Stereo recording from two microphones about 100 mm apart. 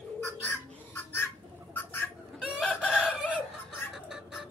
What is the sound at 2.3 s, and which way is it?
Chicken, centre (ahead or behind).